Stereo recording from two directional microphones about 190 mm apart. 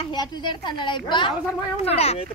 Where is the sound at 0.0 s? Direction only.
25° left (ahead or behind).